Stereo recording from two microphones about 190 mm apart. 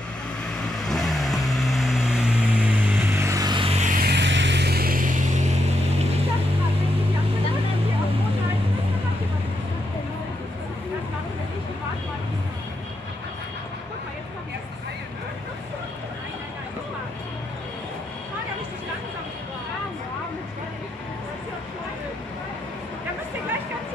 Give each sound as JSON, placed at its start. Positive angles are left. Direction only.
{"t": 0.8, "sound": "vehicle", "side_deg": 0}